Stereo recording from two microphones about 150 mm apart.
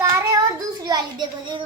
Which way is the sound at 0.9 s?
30° right (ahead or behind).